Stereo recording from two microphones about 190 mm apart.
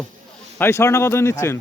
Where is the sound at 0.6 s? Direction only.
15° left (ahead or behind).